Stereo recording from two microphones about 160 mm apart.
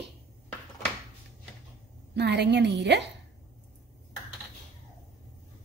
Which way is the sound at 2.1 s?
90° right.